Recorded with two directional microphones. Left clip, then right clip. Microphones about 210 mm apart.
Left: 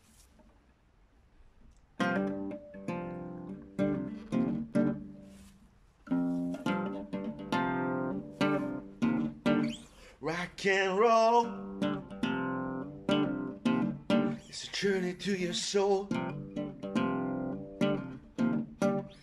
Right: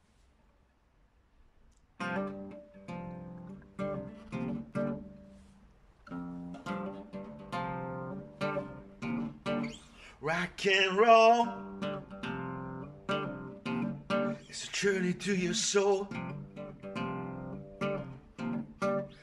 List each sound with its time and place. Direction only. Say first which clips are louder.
2.0 s guitar: left 4 dB; 35° left (ahead or behind)
6.0 s music: left 11 dB; 45° left (ahead or behind)
10.2 s speech: right 1 dB; 25° left (ahead or behind)
11.4 s music: left 1 dB; 35° left (ahead or behind)
16.1 s guitar: left 6 dB; 40° left (ahead or behind)